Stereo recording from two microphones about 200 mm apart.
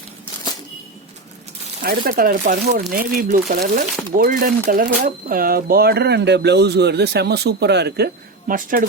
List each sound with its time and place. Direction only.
1.8 s speech: 45° right (ahead or behind)